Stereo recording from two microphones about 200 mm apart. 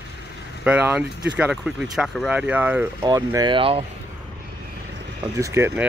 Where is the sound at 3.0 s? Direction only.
20° right (ahead or behind).